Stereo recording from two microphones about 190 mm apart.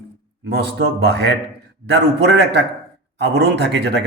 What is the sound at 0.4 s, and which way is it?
A man's voice, 60° right (ahead or behind).